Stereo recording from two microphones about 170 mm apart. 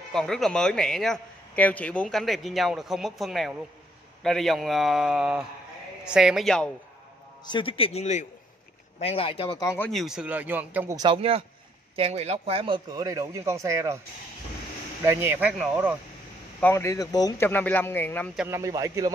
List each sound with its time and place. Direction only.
0.1 s a man's voice: 5° left (ahead or behind)
7.4 s speech: 30° left (ahead or behind)
9.8 s speech: centre (ahead or behind)
11.0 s a man's voice: 30° right (ahead or behind)
15.0 s speech: 15° right (ahead or behind)
16.6 s speech: 15° left (ahead or behind)
17.5 s a man's voice: 10° left (ahead or behind)
18.5 s a man's voice: 20° right (ahead or behind)